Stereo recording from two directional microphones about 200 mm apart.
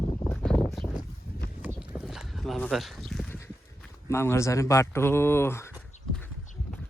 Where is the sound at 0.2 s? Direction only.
10° left (ahead or behind).